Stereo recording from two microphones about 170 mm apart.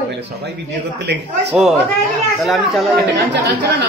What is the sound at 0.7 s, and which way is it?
Speech, 90° right.